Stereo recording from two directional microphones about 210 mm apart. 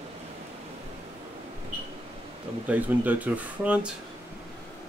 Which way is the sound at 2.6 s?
5° right (ahead or behind).